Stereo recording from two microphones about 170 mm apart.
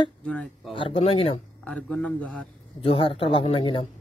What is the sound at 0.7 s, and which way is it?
Speech, 30° left (ahead or behind).